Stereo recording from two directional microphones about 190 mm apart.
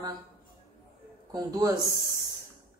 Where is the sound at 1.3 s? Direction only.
20° right (ahead or behind).